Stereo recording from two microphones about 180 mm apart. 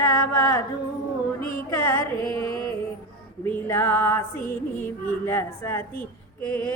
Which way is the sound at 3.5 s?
10° left (ahead or behind).